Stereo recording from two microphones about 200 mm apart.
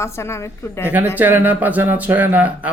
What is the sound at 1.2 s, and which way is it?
Speech, 10° right (ahead or behind).